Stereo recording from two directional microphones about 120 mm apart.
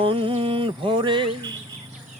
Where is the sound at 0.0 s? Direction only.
50° right (ahead or behind).